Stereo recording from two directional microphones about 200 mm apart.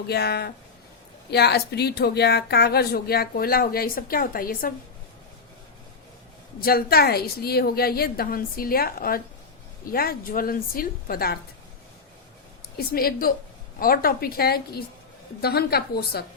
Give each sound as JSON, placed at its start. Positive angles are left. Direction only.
{"t": 0.1, "sound": "a woman's voice", "side_deg": 55}
{"t": 6.6, "sound": "a woman's voice", "side_deg": 50}
{"t": 12.7, "sound": "a woman's voice", "side_deg": 50}